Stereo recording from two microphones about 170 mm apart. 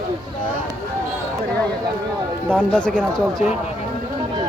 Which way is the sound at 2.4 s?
5° left (ahead or behind).